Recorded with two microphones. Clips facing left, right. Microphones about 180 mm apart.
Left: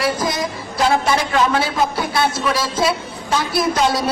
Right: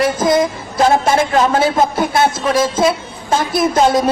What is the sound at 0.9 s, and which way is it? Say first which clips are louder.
A man's voice: right 4 dB; 45° right (ahead or behind).